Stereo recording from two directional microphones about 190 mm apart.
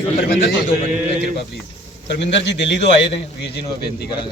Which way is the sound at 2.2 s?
70° left (ahead or behind).